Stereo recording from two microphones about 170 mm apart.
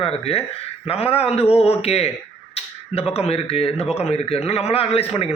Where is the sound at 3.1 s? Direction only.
35° left (ahead or behind).